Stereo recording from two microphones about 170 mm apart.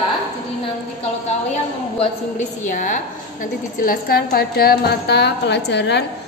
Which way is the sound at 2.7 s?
50° left (ahead or behind).